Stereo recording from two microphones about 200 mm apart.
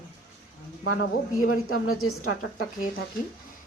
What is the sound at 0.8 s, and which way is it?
A woman's voice, 90° left.